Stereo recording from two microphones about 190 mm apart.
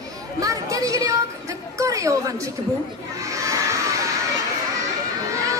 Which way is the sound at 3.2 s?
15° right (ahead or behind).